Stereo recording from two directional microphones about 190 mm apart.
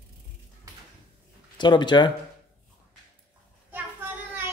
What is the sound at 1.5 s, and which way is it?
Speech, 25° left (ahead or behind).